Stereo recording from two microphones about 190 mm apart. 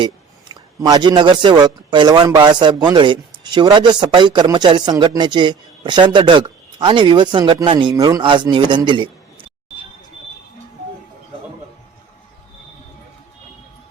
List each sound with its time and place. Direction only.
0.0 s a man's voice: 20° right (ahead or behind)